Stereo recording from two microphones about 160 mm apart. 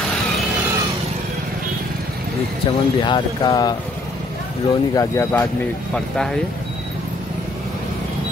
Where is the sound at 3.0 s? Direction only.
25° left (ahead or behind).